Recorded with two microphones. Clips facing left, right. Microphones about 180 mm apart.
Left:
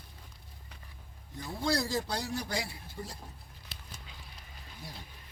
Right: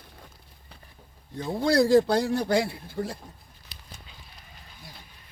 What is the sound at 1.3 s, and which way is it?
Speech, 60° right (ahead or behind).